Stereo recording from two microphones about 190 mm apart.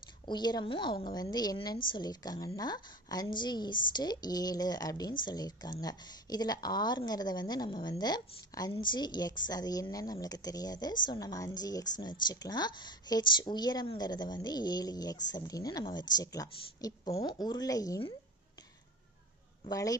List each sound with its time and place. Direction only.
0.3 s a woman's voice: 20° left (ahead or behind)
19.7 s speech: 20° left (ahead or behind)